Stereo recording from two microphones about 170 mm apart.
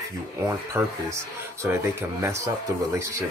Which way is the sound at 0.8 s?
15° right (ahead or behind).